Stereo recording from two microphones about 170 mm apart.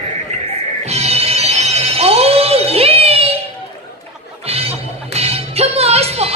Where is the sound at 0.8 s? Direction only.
40° right (ahead or behind).